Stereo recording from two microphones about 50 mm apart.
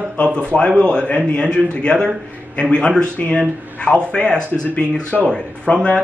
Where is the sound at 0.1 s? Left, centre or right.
Left.